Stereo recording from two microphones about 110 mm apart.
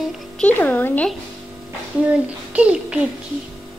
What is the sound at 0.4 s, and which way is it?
Speech, 15° left (ahead or behind).